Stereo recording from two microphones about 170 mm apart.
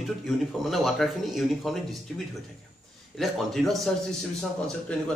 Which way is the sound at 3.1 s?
Centre (ahead or behind).